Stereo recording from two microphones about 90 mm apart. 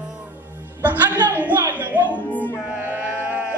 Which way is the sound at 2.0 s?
20° left (ahead or behind).